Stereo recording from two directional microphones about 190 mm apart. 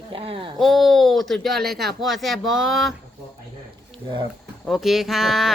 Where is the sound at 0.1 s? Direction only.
30° right (ahead or behind).